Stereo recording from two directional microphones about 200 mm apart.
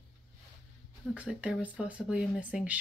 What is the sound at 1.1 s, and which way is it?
Speech, 5° right (ahead or behind).